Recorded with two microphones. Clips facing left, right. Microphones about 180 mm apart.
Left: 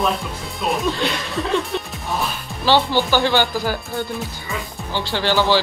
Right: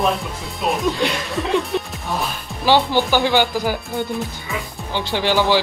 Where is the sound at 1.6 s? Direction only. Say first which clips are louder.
Right 3 dB; centre (ahead or behind).